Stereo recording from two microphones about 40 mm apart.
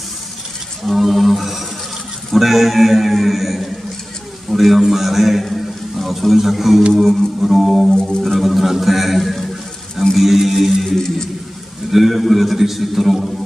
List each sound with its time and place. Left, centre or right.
0.8 s a man's voice: centre
7.9 s music: centre
8.2 s a man's voice: centre